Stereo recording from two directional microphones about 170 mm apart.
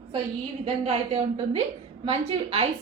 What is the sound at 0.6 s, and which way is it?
A woman's voice, 35° right (ahead or behind).